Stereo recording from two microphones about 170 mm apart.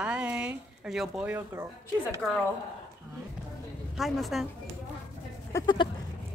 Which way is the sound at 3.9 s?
Centre (ahead or behind).